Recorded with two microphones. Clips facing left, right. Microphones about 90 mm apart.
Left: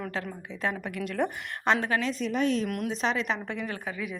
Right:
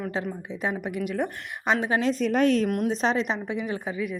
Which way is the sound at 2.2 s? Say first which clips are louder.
Right 7 dB; 60° right (ahead or behind).